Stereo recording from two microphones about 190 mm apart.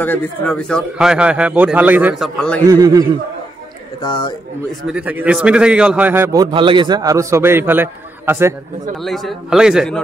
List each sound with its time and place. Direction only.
0.0 s a man's voice: 10° left (ahead or behind)
2.6 s a man's voice: 20° right (ahead or behind)
4.0 s a man's voice: 25° left (ahead or behind)
4.8 s a man's voice: 5° right (ahead or behind)
8.9 s a man's voice: centre (ahead or behind)